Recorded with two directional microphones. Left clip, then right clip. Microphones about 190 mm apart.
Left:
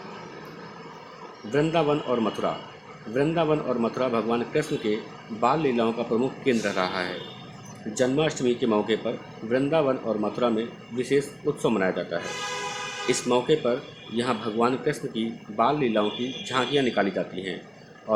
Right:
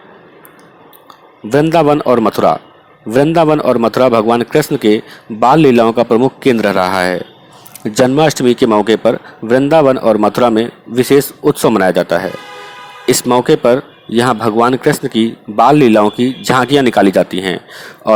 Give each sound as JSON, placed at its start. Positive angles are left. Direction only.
{"t": 1.5, "sound": "speech", "side_deg": -50}